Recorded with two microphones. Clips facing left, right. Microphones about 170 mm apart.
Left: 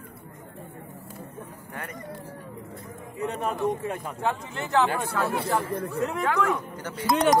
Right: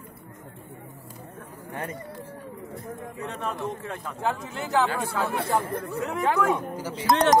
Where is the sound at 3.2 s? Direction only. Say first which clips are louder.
Left 5 dB; 15° left (ahead or behind).